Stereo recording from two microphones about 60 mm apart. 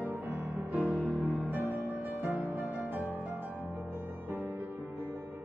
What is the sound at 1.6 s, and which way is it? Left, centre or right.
Music, right.